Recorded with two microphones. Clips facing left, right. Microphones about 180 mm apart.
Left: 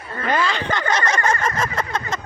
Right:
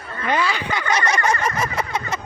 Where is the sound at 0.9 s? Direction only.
10° right (ahead or behind).